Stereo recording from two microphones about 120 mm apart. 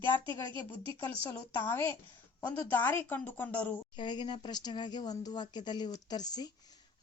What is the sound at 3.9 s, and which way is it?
A woman's voice, 40° left (ahead or behind).